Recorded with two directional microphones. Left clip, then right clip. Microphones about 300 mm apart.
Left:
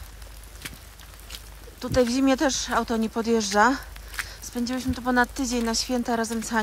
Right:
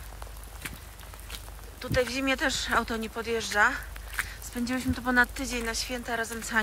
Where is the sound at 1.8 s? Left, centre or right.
Centre.